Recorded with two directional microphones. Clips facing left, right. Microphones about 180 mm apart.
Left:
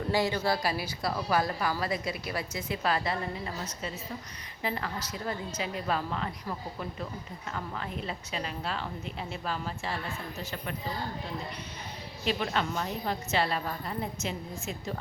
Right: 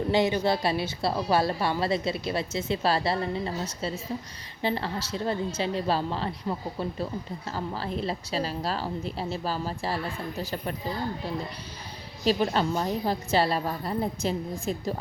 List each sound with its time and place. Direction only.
0.1 s a woman's voice: 20° right (ahead or behind)
12.2 s a woman's voice: 35° right (ahead or behind)